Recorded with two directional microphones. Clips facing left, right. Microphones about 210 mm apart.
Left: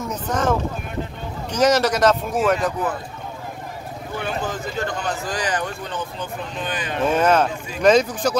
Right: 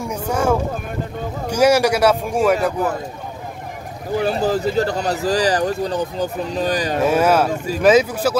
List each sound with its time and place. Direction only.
0.0 s speech: 10° right (ahead or behind)
4.2 s speech: 35° right (ahead or behind)
7.0 s speech: 10° right (ahead or behind)
7.5 s speech: 40° right (ahead or behind)
7.8 s speech: 5° right (ahead or behind)